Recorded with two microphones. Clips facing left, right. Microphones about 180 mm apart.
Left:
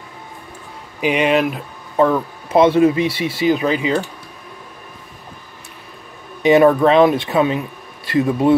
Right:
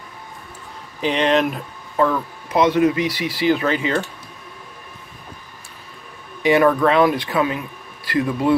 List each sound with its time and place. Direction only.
1.0 s speech: 10° left (ahead or behind)
2.0 s speech: 25° left (ahead or behind)
6.4 s speech: 25° left (ahead or behind)